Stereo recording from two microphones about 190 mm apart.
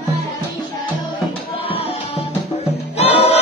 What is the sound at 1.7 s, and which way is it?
Music, 30° left (ahead or behind).